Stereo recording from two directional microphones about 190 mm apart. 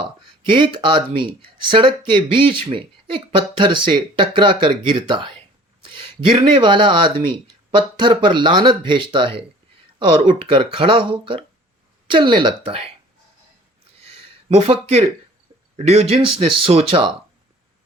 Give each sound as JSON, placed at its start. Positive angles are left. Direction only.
{"t": 0.5, "sound": "speech", "side_deg": -25}
{"t": 6.1, "sound": "speech", "side_deg": -25}
{"t": 14.6, "sound": "speech", "side_deg": -30}